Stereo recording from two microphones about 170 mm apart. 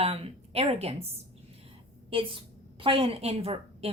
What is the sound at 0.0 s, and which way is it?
A woman's voice, 35° right (ahead or behind).